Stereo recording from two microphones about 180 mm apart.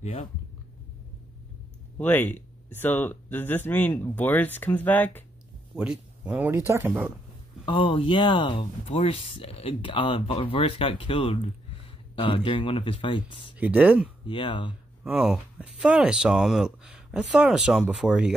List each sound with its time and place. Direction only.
0.0 s speech: 35° left (ahead or behind)
2.0 s speech: 10° left (ahead or behind)
5.8 s speech: 5° right (ahead or behind)
7.6 s speech: 30° left (ahead or behind)
13.6 s speech: 10° right (ahead or behind)
14.2 s speech: 25° left (ahead or behind)
15.0 s speech: 5° right (ahead or behind)